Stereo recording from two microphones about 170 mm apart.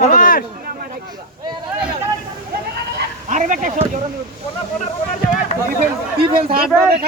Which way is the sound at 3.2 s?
50° right (ahead or behind).